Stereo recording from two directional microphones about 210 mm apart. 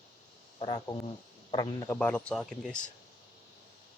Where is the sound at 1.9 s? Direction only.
5° left (ahead or behind).